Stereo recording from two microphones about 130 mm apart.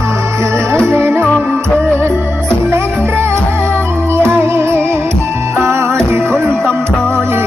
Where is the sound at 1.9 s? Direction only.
15° right (ahead or behind).